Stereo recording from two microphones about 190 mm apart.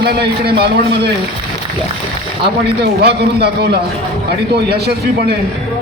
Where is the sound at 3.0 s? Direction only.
55° right (ahead or behind).